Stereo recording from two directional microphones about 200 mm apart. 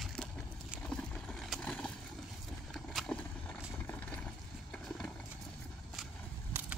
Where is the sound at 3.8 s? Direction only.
5° left (ahead or behind).